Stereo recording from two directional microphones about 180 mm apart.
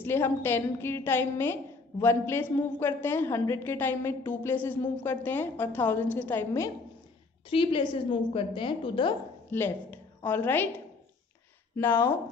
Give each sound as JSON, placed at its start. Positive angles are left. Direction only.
{"t": 0.0, "sound": "a woman's voice", "side_deg": 10}
{"t": 7.4, "sound": "a woman's voice", "side_deg": 30}
{"t": 9.5, "sound": "a woman's voice", "side_deg": 10}
{"t": 11.7, "sound": "speech", "side_deg": 10}